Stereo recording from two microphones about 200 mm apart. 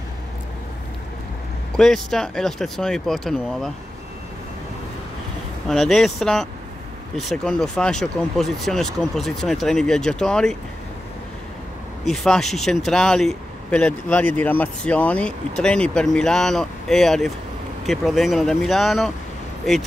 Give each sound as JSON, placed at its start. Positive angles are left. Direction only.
{"t": 1.8, "sound": "speech", "side_deg": 0}
{"t": 5.7, "sound": "speech", "side_deg": 0}
{"t": 12.0, "sound": "speech", "side_deg": 0}